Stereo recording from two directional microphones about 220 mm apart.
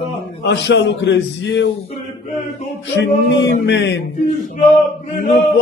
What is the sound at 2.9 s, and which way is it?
Speech, 50° left (ahead or behind).